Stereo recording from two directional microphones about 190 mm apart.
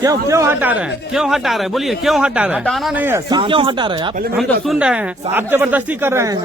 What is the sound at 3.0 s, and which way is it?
Speech, 15° right (ahead or behind).